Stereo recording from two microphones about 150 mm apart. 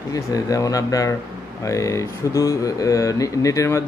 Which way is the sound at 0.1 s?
25° left (ahead or behind).